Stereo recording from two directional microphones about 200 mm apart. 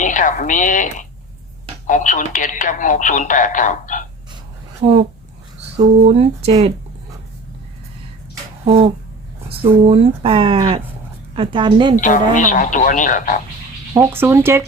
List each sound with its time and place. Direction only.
0.0 s a woman's voice: 40° left (ahead or behind)
4.8 s speech: 35° right (ahead or behind)
6.1 s speech: 30° right (ahead or behind)
9.5 s speech: 30° right (ahead or behind)
11.9 s speech: 40° left (ahead or behind)
13.9 s speech: 15° right (ahead or behind)